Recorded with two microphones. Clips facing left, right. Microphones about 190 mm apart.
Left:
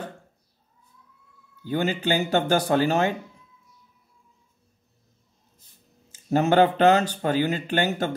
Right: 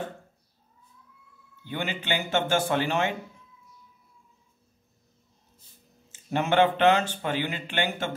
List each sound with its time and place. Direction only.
1.7 s speech: 40° left (ahead or behind)
6.1 s speech: 40° left (ahead or behind)